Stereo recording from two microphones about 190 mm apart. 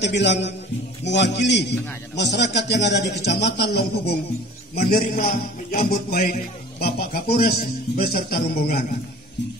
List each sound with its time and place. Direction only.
0.0 s a man's voice: 65° left (ahead or behind)
4.7 s a man's voice: 55° left (ahead or behind)